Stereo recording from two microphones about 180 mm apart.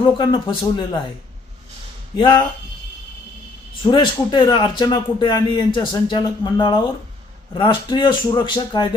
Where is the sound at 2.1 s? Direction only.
25° left (ahead or behind).